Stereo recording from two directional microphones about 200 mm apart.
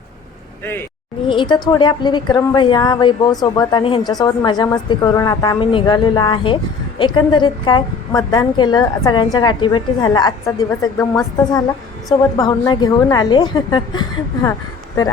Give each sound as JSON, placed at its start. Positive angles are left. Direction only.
{"t": 0.6, "sound": "a woman's voice", "side_deg": 10}
{"t": 1.3, "sound": "a woman's voice", "side_deg": 25}